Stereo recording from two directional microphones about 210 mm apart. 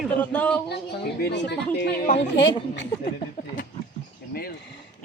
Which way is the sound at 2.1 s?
25° left (ahead or behind).